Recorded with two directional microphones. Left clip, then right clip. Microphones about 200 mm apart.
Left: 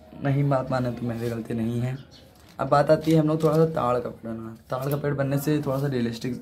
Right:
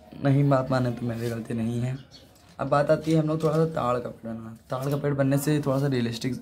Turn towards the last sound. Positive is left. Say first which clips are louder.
# even
turn(degrees=-20)  # may be behind; listen again after turning